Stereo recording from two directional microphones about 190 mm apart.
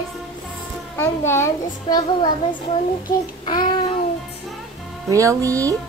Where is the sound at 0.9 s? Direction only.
15° left (ahead or behind).